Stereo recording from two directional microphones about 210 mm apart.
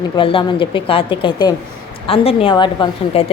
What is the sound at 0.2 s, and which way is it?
A woman's voice, 25° left (ahead or behind).